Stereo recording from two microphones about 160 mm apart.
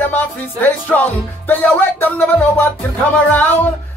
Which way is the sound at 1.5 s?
10° left (ahead or behind).